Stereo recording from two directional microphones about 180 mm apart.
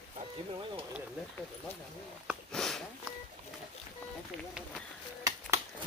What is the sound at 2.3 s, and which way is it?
Sniff, centre (ahead or behind).